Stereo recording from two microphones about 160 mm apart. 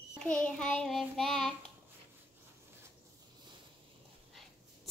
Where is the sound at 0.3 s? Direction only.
5° left (ahead or behind).